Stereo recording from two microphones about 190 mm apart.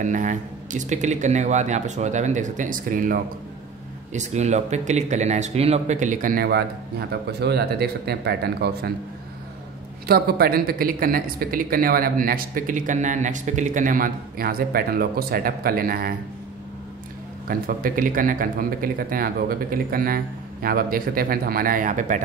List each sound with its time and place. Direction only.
0.0 s speech: 40° right (ahead or behind)
10.0 s speech: 55° right (ahead or behind)
17.5 s speech: 50° right (ahead or behind)